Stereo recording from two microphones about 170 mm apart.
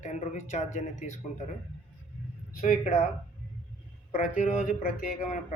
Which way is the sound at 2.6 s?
50° left (ahead or behind).